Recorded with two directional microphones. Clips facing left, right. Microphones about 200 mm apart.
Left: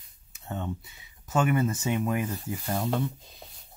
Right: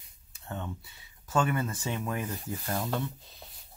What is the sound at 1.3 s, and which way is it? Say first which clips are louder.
Speech: left 4 dB; 20° left (ahead or behind).